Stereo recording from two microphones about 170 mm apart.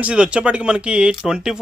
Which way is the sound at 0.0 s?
5° right (ahead or behind).